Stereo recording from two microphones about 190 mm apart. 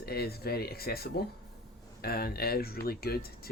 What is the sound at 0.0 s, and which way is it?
Speech, 55° left (ahead or behind).